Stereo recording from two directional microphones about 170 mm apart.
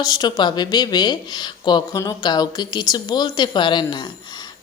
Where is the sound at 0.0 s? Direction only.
25° left (ahead or behind).